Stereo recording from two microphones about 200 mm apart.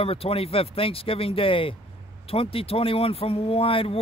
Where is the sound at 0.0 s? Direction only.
30° left (ahead or behind).